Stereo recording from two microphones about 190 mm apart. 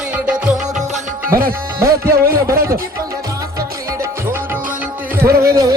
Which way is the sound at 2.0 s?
50° right (ahead or behind).